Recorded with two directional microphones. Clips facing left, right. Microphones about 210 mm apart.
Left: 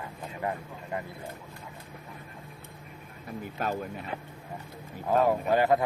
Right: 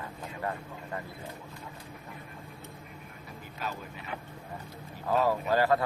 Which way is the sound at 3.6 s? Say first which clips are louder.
Left 6 dB; 50° left (ahead or behind).